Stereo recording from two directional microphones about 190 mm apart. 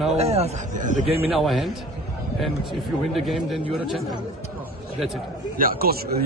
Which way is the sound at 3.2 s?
Centre (ahead or behind).